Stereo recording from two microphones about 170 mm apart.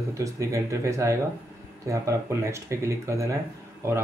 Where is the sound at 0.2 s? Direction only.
20° right (ahead or behind).